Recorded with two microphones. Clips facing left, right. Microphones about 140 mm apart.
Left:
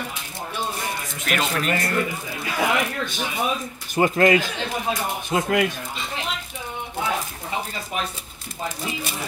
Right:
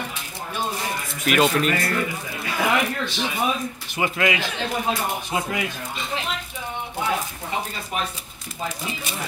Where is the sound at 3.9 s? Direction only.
40° left (ahead or behind).